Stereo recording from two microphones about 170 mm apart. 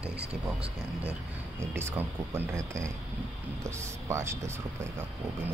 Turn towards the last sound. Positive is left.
turn(degrees=-15)  # may be behind; listen again after turning